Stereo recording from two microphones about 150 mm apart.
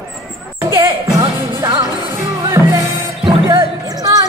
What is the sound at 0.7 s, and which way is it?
Music, 25° right (ahead or behind).